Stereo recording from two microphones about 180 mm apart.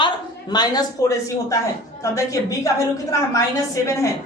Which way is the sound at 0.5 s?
25° left (ahead or behind).